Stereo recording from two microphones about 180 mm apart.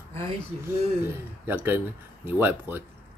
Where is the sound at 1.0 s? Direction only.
10° right (ahead or behind).